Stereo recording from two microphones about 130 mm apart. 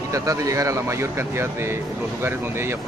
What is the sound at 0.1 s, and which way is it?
Speech, 25° right (ahead or behind).